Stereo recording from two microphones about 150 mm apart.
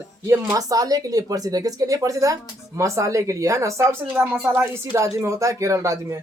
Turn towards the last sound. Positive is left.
turn(degrees=-20)  # may be behind; listen again after turning